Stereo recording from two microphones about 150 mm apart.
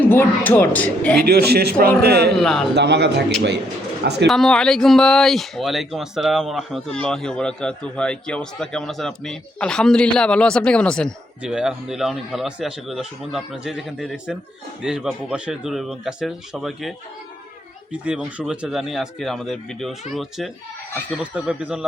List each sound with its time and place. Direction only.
0.0 s speech: 10° left (ahead or behind)
1.2 s a man's voice: 90° right
2.4 s speech: centre (ahead or behind)
4.0 s a man's voice: 90° right
4.3 s speech: 5° left (ahead or behind)
11.4 s speech: 5° right (ahead or behind)
18.0 s speech: 5° right (ahead or behind)